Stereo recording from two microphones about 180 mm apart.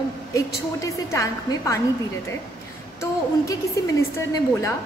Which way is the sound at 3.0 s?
20° left (ahead or behind).